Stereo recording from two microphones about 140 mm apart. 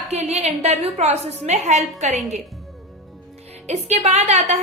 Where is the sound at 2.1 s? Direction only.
Centre (ahead or behind).